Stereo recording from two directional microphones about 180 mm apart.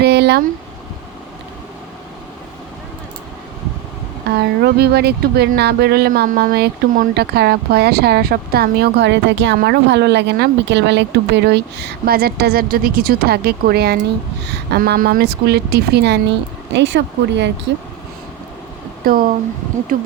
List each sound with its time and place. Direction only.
0.0 s a sound: 65° right (ahead or behind)
4.4 s speech: 65° right (ahead or behind)
16.7 s speech: 80° right
19.0 s speech: 55° right (ahead or behind)